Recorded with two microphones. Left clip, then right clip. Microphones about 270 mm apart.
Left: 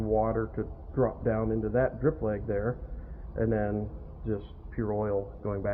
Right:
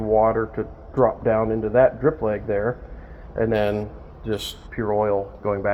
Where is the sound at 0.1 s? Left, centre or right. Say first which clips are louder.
Right 10 dB; centre.